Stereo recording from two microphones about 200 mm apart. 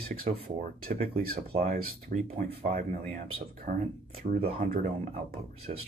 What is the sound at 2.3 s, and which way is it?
Speech, 45° right (ahead or behind).